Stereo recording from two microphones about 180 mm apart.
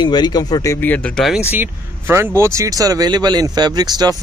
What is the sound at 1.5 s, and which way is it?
Speech, 10° right (ahead or behind).